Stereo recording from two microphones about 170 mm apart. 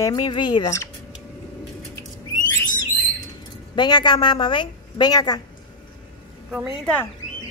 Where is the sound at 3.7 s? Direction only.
25° left (ahead or behind).